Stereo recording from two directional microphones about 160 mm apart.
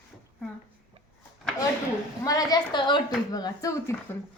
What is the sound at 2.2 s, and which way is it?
Speech, 25° left (ahead or behind).